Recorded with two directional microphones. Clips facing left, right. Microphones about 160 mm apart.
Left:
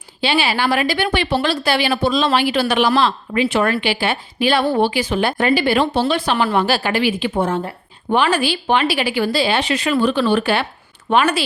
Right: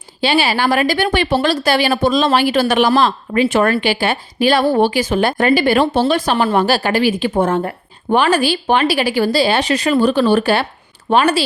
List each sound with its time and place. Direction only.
0.2 s a woman's voice: 40° right (ahead or behind)